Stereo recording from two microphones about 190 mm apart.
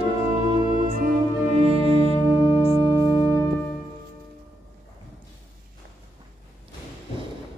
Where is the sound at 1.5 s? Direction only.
30° right (ahead or behind).